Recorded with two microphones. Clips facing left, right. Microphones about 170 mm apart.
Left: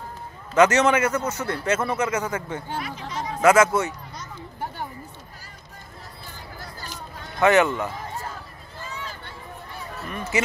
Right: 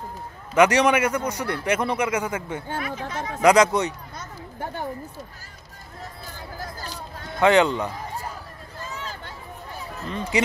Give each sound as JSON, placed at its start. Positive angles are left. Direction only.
{"t": 0.6, "sound": "speech", "side_deg": -15}
{"t": 2.7, "sound": "speech", "side_deg": -50}
{"t": 3.4, "sound": "speech", "side_deg": -15}
{"t": 7.3, "sound": "speech", "side_deg": -15}
{"t": 10.0, "sound": "speech", "side_deg": -20}